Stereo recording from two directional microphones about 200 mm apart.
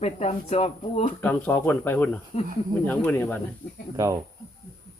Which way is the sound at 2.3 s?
35° left (ahead or behind).